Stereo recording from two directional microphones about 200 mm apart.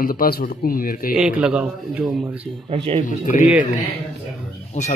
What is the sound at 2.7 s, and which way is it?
Speech, 25° right (ahead or behind).